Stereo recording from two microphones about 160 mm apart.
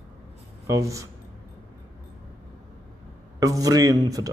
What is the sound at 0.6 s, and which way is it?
Speech, 20° right (ahead or behind).